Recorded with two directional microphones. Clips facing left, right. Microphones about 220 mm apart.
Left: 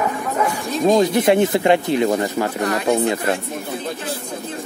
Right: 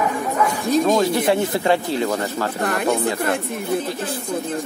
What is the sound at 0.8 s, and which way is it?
Speech, 20° left (ahead or behind).